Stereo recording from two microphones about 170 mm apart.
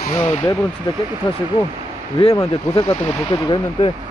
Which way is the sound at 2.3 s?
20° left (ahead or behind).